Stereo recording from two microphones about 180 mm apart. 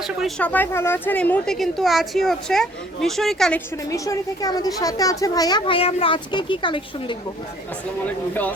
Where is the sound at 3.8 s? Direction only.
20° left (ahead or behind).